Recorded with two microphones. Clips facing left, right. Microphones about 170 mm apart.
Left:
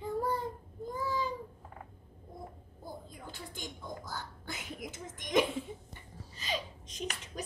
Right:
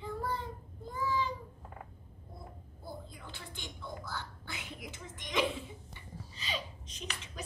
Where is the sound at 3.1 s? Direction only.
45° left (ahead or behind).